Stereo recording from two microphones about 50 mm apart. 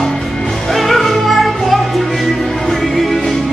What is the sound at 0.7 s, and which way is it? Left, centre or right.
Music, centre.